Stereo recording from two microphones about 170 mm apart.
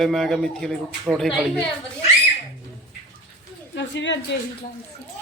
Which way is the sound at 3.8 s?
90° left.